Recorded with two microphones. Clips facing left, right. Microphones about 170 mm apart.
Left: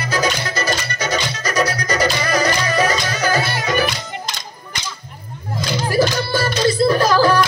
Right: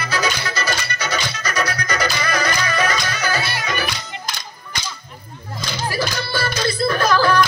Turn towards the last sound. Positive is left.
turn(degrees=35)  # may be behind; listen again after turning